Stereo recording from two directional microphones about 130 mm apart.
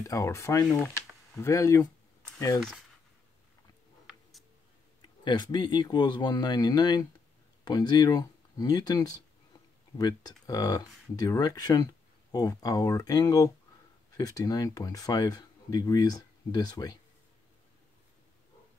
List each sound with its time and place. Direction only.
0.0 s speech: 25° left (ahead or behind)
5.2 s speech: 35° left (ahead or behind)